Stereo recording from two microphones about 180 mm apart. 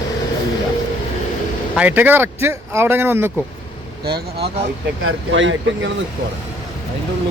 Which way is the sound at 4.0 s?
65° right (ahead or behind).